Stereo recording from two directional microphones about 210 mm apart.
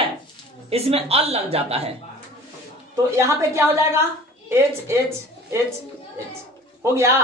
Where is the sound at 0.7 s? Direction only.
30° right (ahead or behind).